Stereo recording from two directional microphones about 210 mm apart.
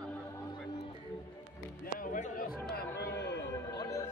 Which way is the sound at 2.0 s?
35° left (ahead or behind).